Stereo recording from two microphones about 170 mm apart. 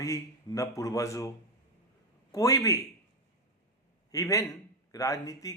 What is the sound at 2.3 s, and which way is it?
Speech, 20° left (ahead or behind).